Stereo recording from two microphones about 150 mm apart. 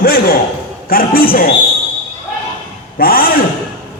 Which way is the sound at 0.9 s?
75° left (ahead or behind).